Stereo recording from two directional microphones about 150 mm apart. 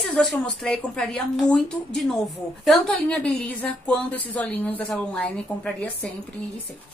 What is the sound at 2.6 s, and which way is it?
A woman's voice, 5° left (ahead or behind).